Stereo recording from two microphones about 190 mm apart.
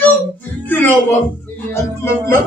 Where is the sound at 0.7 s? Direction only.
10° left (ahead or behind).